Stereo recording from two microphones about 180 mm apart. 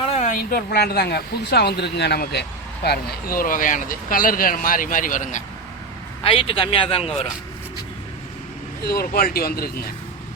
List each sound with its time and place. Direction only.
0.0 s a sound: 35° left (ahead or behind)
0.3 s a woman's voice: 60° left (ahead or behind)
6.2 s speech: 30° left (ahead or behind)
8.8 s a woman's voice: 55° left (ahead or behind)